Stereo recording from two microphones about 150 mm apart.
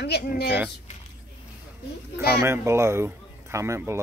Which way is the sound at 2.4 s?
15° right (ahead or behind).